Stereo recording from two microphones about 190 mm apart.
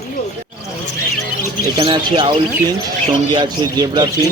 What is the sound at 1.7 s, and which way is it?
A man's voice, 25° right (ahead or behind).